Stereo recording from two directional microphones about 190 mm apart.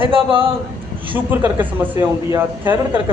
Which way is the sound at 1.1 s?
10° right (ahead or behind).